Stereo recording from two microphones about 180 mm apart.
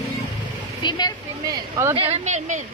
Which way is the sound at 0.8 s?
25° left (ahead or behind).